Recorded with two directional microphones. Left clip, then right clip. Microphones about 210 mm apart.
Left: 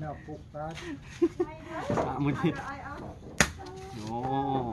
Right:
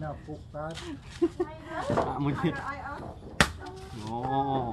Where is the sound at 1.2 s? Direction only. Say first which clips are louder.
Even; 5° right (ahead or behind).